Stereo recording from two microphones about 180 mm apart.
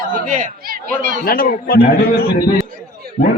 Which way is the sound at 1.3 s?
55° left (ahead or behind).